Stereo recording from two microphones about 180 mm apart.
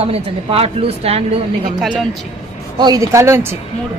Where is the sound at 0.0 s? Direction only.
30° right (ahead or behind).